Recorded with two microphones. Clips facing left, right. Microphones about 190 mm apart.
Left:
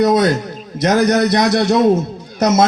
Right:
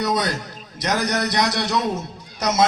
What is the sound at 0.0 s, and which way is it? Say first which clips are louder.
A man's voice: left 10 dB; 50° left (ahead or behind).